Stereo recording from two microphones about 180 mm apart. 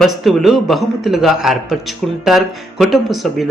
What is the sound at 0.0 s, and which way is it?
Speech, centre (ahead or behind).